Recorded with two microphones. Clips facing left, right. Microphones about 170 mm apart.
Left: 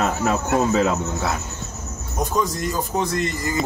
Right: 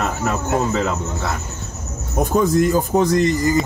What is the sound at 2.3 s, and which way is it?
Speech, 55° right (ahead or behind).